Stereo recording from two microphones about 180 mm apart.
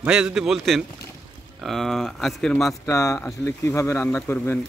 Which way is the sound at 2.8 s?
15° left (ahead or behind).